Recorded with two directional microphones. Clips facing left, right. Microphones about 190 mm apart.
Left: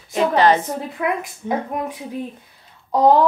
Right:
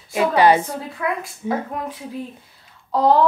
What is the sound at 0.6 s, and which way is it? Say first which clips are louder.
A woman's voice: left 2 dB; 20° left (ahead or behind).